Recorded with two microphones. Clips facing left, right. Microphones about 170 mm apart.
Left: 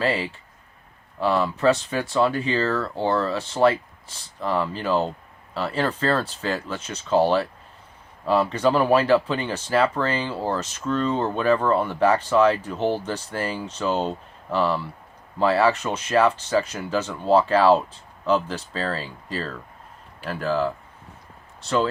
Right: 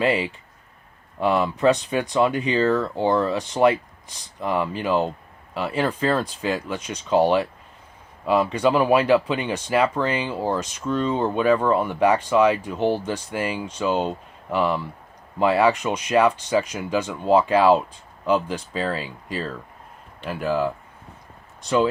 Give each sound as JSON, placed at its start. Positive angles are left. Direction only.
{"t": 0.0, "sound": "speech", "side_deg": -20}